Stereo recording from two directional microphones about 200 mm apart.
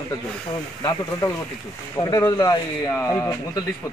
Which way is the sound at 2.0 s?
20° left (ahead or behind).